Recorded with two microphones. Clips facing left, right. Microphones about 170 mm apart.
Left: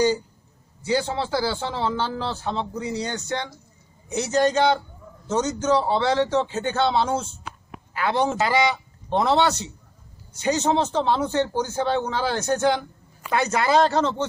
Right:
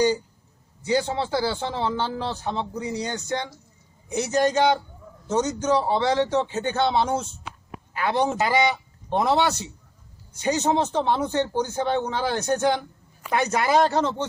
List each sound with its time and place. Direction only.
0.8 s a man's voice: 20° right (ahead or behind)